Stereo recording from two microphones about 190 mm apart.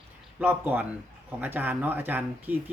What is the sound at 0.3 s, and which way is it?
Speech, 10° right (ahead or behind).